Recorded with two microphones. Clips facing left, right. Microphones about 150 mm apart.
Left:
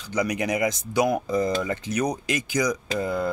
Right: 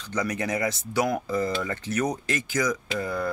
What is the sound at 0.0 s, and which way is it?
Speech, 15° left (ahead or behind).